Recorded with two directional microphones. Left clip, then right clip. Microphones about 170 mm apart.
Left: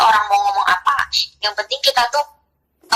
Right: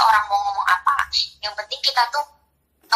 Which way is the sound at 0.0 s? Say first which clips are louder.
Left 3 dB; 40° left (ahead or behind).